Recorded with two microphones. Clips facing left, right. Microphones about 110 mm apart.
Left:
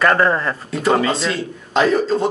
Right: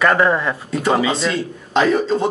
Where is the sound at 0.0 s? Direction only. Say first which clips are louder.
Even; 5° right (ahead or behind).